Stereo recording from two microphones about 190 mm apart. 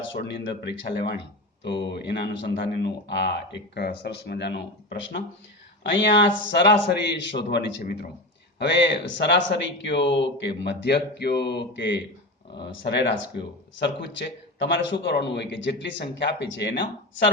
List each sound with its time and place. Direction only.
0.1 s a man's voice: 65° left (ahead or behind)
7.8 s speech: 45° left (ahead or behind)
8.5 s a man's voice: 65° left (ahead or behind)